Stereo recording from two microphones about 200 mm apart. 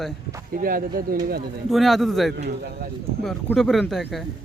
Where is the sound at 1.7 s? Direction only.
Centre (ahead or behind).